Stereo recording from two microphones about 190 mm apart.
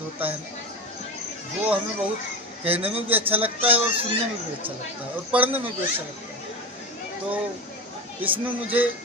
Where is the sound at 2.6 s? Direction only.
30° right (ahead or behind).